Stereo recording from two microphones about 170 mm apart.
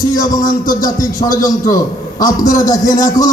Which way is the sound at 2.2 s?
55° left (ahead or behind).